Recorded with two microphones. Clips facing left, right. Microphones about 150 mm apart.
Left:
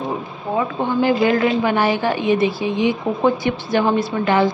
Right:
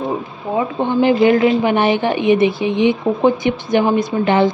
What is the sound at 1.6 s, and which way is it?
A woman's voice, 20° right (ahead or behind).